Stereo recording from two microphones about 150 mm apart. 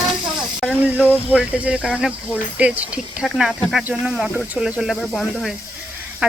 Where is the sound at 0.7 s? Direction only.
10° right (ahead or behind).